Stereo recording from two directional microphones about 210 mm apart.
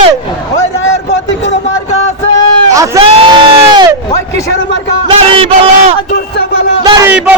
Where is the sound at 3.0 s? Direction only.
25° right (ahead or behind).